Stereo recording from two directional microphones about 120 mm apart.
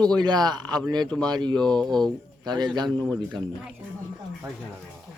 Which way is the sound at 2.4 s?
40° right (ahead or behind).